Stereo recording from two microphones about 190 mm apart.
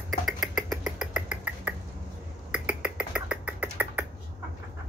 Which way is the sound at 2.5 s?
5° right (ahead or behind).